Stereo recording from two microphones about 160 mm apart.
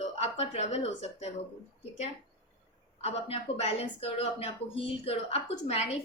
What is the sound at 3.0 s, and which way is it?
A woman's voice, 40° left (ahead or behind).